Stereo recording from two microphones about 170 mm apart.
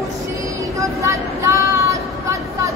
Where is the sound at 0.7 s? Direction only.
15° right (ahead or behind).